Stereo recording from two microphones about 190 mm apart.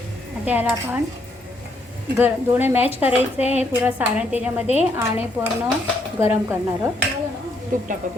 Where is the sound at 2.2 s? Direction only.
10° right (ahead or behind).